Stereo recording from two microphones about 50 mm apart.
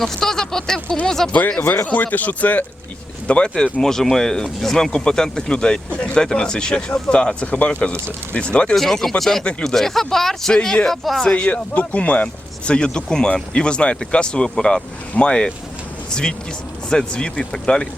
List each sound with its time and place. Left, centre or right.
0.0 s speech: centre
1.3 s speech: left
3.2 s speech: left
8.7 s speech: centre
9.4 s speech: left
9.6 s speech: centre
11.2 s speech: centre
11.4 s speech: left
16.9 s speech: centre